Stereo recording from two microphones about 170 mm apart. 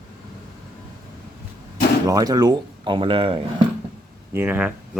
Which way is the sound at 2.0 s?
20° right (ahead or behind).